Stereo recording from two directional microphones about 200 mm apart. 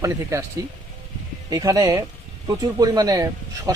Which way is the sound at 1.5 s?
15° right (ahead or behind).